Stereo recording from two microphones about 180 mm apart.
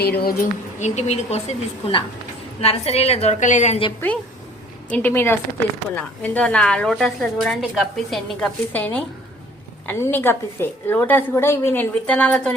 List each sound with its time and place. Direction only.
0.0 s speech: 60° left (ahead or behind); by 3.9 s 35° left (ahead or behind)
4.9 s a woman's voice: 10° left (ahead or behind)